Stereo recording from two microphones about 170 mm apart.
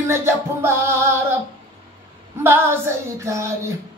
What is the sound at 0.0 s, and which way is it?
Female singing, 15° right (ahead or behind).